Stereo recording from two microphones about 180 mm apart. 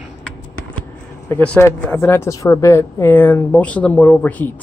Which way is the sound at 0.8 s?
10° left (ahead or behind).